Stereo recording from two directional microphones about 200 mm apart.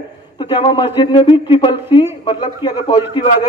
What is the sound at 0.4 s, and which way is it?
A man's voice, 25° left (ahead or behind).